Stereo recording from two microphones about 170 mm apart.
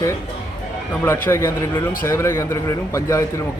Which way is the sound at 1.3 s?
15° left (ahead or behind).